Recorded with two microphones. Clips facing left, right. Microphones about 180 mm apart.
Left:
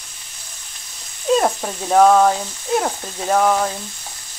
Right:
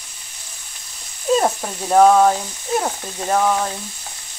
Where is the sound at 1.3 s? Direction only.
Centre (ahead or behind).